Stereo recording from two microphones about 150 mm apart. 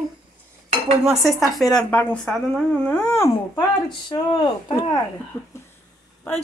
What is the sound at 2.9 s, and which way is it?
Speech, 15° left (ahead or behind).